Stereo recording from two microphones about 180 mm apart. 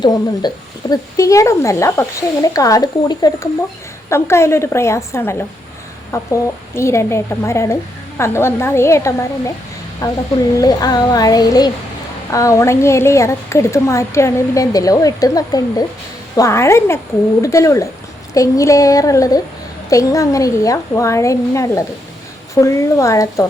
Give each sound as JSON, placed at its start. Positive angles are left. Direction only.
{"t": 0.0, "sound": "a woman's voice", "side_deg": 20}